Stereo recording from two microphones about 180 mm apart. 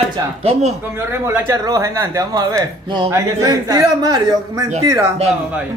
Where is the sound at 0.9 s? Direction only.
15° right (ahead or behind).